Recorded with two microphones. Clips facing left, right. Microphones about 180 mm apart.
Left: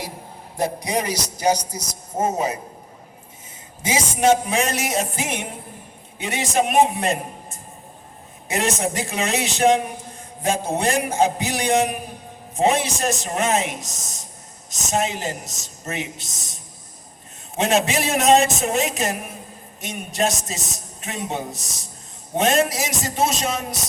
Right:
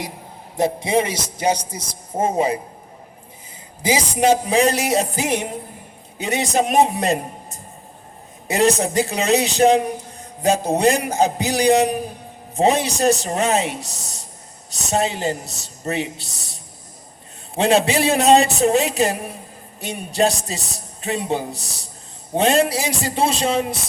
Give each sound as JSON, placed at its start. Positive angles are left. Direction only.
{"t": 0.5, "sound": "a man's voice", "side_deg": -25}
{"t": 3.8, "sound": "a man's voice", "side_deg": -35}